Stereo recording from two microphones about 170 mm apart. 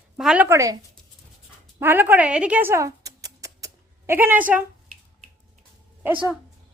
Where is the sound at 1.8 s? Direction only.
10° right (ahead or behind).